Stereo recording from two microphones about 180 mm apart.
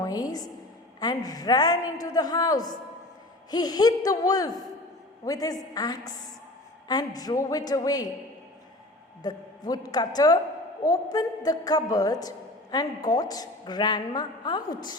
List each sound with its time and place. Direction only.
0.0 s a woman's voice: 20° left (ahead or behind)
9.2 s a woman's voice: 20° left (ahead or behind)